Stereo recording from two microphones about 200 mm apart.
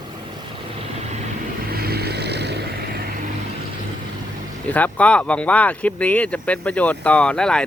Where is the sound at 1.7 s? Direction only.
50° right (ahead or behind).